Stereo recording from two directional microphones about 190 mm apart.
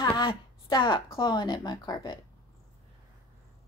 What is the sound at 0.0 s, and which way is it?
Speech, 25° left (ahead or behind).